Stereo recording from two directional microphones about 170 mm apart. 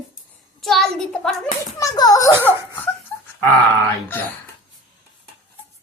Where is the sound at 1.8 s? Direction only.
20° left (ahead or behind).